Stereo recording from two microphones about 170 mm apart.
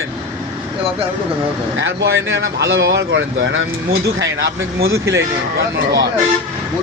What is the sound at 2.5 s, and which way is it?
Speech, 90° right.